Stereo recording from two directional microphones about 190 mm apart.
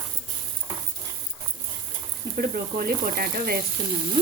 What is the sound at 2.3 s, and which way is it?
Speech, 50° right (ahead or behind).